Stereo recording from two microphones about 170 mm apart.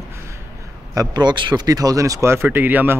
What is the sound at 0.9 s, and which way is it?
Speech, 20° right (ahead or behind).